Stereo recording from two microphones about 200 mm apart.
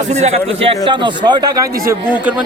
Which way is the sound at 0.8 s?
25° right (ahead or behind).